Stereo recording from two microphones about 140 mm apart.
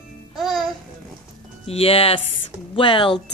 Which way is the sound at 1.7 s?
45° left (ahead or behind).